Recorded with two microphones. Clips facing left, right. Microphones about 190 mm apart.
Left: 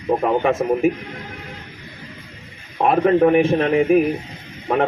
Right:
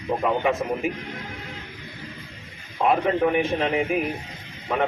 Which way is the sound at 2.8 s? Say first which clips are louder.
Left 6 dB; 50° left (ahead or behind).